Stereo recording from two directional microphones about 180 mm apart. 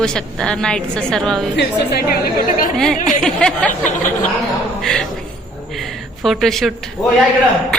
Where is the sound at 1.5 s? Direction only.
65° left (ahead or behind).